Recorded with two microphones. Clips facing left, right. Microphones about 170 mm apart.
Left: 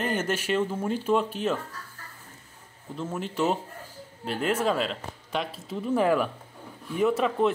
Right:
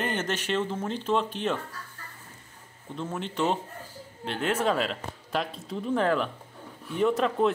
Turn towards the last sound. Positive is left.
turn(degrees=5)  # may be behind; listen again after turning